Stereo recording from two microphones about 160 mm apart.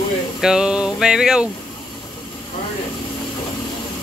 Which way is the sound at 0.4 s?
5° right (ahead or behind).